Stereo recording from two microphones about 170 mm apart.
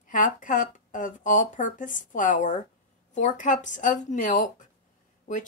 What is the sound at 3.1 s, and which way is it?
Speech, 45° left (ahead or behind).